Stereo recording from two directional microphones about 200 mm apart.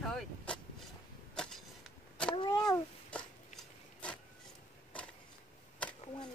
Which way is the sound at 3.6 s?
5° left (ahead or behind).